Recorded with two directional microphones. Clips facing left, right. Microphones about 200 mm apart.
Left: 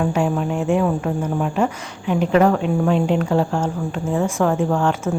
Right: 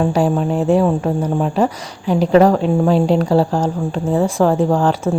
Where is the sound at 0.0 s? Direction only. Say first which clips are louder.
Right 4 dB; 35° right (ahead or behind).